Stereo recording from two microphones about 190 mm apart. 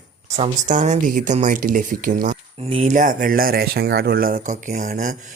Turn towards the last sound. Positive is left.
turn(degrees=-40)  # may be behind; listen again after turning